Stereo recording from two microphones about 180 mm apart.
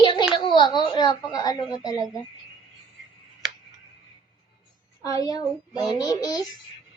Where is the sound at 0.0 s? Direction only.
25° left (ahead or behind).